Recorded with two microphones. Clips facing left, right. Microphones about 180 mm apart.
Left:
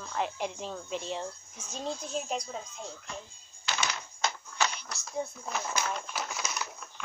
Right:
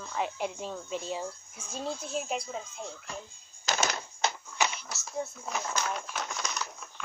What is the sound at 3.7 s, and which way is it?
Typewriter, 45° right (ahead or behind).